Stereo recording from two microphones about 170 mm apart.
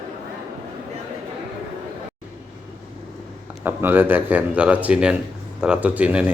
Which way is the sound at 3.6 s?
10° right (ahead or behind).